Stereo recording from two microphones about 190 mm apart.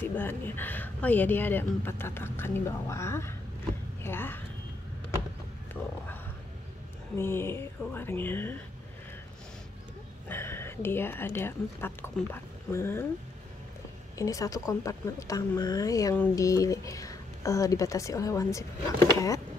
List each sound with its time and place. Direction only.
0.0 s a woman's voice: 10° left (ahead or behind)
7.2 s a woman's voice: 10° left (ahead or behind)
10.2 s speech: 10° left (ahead or behind)
14.1 s a woman's voice: 15° left (ahead or behind)